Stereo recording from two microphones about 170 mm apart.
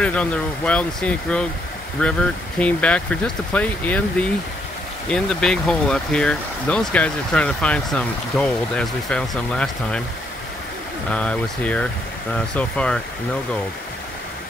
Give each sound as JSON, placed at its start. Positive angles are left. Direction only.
{"t": 0.0, "sound": "speech", "side_deg": 5}
{"t": 11.1, "sound": "speech", "side_deg": 5}